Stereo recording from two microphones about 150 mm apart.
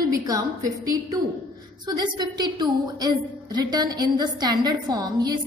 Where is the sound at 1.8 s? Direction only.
25° right (ahead or behind).